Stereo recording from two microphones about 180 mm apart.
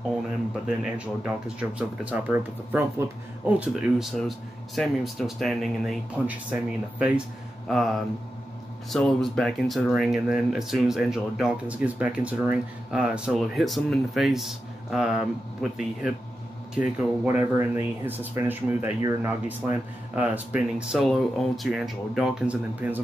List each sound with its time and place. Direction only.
0.7 s speech: 5° right (ahead or behind)